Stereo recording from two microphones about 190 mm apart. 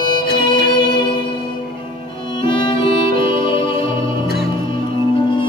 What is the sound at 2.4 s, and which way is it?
Music, 25° left (ahead or behind).